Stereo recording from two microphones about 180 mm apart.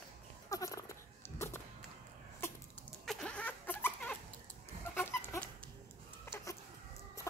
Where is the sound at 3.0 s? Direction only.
Centre (ahead or behind).